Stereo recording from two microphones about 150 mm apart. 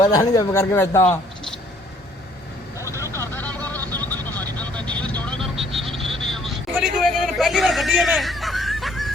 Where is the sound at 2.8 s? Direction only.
20° left (ahead or behind).